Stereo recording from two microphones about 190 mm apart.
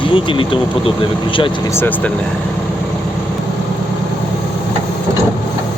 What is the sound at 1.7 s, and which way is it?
Speech, 10° left (ahead or behind).